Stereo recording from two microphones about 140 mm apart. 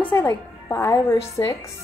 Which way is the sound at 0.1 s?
15° left (ahead or behind).